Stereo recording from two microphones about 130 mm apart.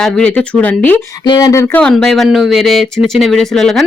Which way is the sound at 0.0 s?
5° left (ahead or behind).